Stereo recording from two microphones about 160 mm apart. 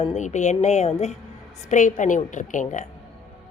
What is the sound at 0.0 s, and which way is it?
A woman's voice, 45° left (ahead or behind).